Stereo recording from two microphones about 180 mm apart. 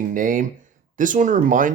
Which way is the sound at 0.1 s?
45° right (ahead or behind).